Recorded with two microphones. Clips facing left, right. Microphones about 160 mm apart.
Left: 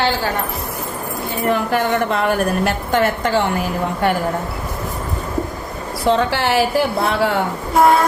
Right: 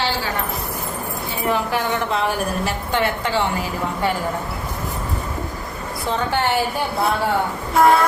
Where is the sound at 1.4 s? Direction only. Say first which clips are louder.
Left 4 dB; 50° left (ahead or behind).